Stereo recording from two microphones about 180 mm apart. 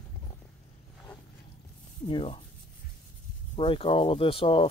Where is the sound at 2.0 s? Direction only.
30° left (ahead or behind).